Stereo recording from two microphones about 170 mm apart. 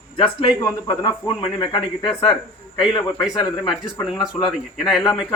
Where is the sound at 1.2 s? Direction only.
30° left (ahead or behind).